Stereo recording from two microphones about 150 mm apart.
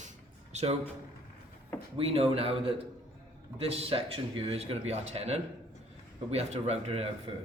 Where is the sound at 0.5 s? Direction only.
45° right (ahead or behind).